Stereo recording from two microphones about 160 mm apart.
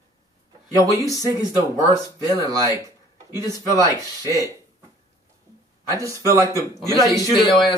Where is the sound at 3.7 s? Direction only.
20° right (ahead or behind).